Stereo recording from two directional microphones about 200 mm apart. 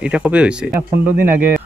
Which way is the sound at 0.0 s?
5° right (ahead or behind).